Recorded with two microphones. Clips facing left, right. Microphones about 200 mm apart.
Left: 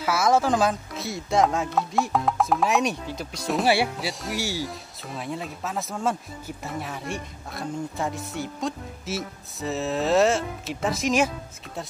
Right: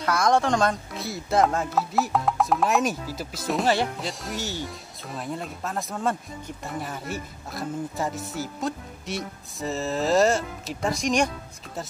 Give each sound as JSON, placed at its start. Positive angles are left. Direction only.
{"t": 0.0, "sound": "speech", "side_deg": 5}
{"t": 3.6, "sound": "speech", "side_deg": 10}